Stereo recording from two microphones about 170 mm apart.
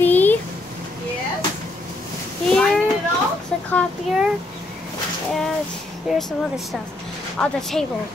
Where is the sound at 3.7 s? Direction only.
5° left (ahead or behind).